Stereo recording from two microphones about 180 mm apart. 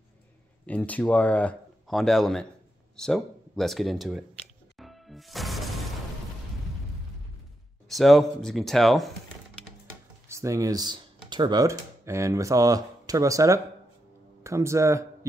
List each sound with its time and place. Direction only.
0.7 s speech: 10° left (ahead or behind)
4.7 s music: centre (ahead or behind)
7.9 s speech: centre (ahead or behind)
10.2 s a man's voice: 15° right (ahead or behind)